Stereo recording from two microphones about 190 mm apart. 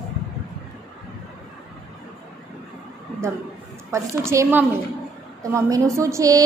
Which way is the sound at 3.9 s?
15° right (ahead or behind).